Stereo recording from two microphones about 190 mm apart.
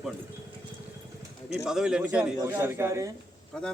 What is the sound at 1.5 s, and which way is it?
A man's voice, 5° right (ahead or behind).